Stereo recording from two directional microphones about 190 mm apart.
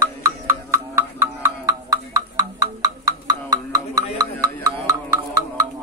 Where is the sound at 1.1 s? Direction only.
15° right (ahead or behind).